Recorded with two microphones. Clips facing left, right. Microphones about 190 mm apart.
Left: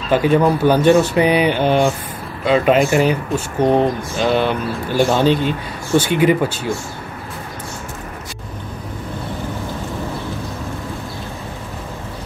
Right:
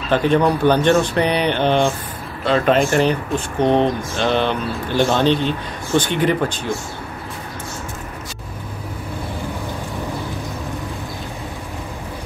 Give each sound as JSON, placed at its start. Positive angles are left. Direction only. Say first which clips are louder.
{"t": 0.1, "sound": "speech", "louder": "left 2 dB", "side_deg": 10}